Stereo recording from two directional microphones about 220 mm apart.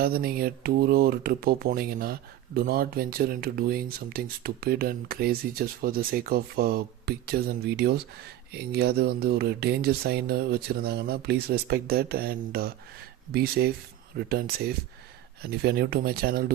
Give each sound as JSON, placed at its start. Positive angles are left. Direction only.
{"t": 0.0, "sound": "speech", "side_deg": -45}